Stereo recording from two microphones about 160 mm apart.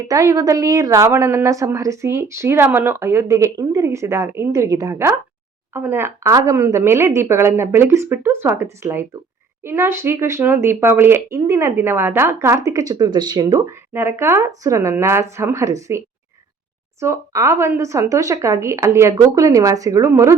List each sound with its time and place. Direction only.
0.1 s a woman's voice: 20° right (ahead or behind)